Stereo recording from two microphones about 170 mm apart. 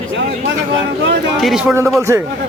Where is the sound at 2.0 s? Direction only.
15° right (ahead or behind).